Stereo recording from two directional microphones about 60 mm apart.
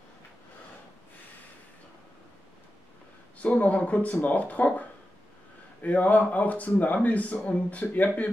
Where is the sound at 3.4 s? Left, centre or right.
Left.